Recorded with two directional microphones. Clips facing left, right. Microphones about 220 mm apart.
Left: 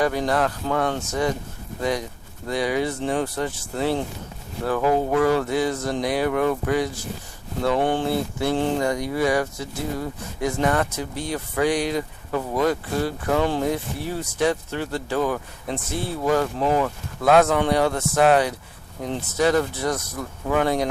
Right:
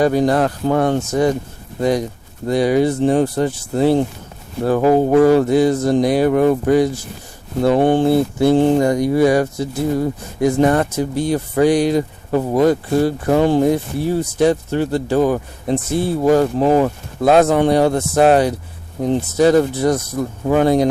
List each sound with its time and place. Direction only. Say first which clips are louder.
0.0 s speech: right 7 dB; 35° right (ahead or behind)